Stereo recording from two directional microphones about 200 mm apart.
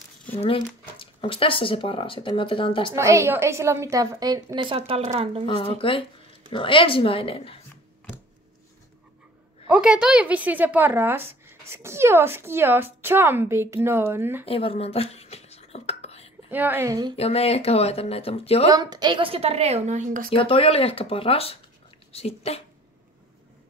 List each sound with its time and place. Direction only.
0.4 s speech: 25° left (ahead or behind)
3.0 s a woman's voice: 15° right (ahead or behind); by 5.6 s 30° right (ahead or behind)
5.6 s speech: 25° left (ahead or behind)
9.7 s a woman's voice: 5° right (ahead or behind)
14.4 s whispering: 30° left (ahead or behind)
16.4 s a woman's voice: 10° right (ahead or behind)
17.2 s speech: 30° left (ahead or behind)
18.7 s a woman's voice: 20° right (ahead or behind); by 20.2 s 40° right (ahead or behind)
20.2 s speech: 25° left (ahead or behind)